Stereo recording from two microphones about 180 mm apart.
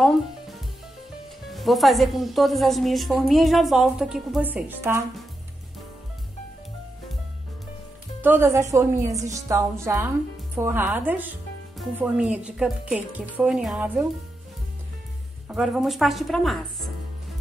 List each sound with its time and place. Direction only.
0.0 s a woman's voice: centre (ahead or behind)
8.2 s a woman's voice: 10° right (ahead or behind)
15.4 s a woman's voice: 5° right (ahead or behind)